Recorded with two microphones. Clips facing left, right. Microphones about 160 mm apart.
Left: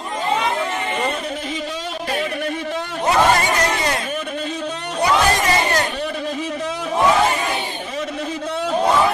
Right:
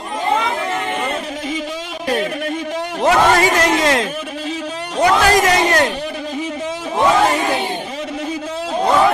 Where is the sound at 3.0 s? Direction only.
90° right.